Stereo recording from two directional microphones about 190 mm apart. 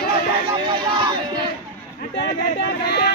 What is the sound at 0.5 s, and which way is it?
Speech, 25° right (ahead or behind).